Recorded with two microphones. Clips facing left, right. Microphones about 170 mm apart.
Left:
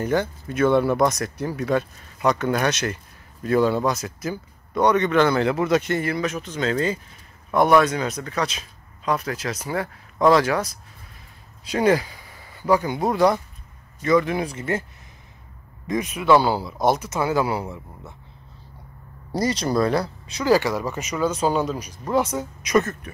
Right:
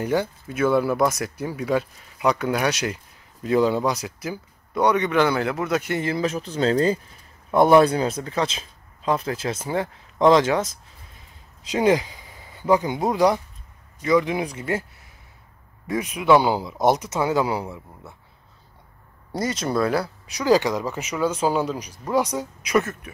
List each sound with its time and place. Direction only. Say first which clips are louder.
0.0 s speech: left 1 dB; 10° right (ahead or behind)
5.9 s speech: right 1 dB; 25° right (ahead or behind)
15.9 s speech: even; 10° right (ahead or behind)
19.3 s speech: left 2 dB; centre (ahead or behind)